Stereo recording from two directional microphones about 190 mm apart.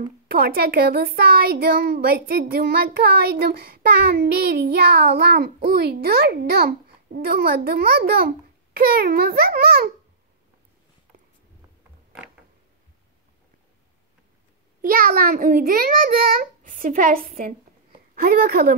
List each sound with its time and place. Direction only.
0.3 s a child's voice: 50° right (ahead or behind)
14.8 s speech: 50° right (ahead or behind)